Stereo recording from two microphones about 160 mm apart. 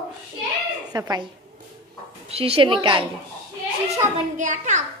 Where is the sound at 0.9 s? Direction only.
20° right (ahead or behind).